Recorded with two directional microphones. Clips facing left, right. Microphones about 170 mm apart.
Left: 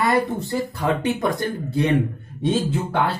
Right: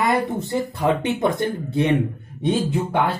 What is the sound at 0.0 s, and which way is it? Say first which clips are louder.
Speech: even; 20° right (ahead or behind).